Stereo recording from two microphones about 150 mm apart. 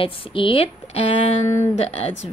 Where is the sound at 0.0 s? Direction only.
35° left (ahead or behind).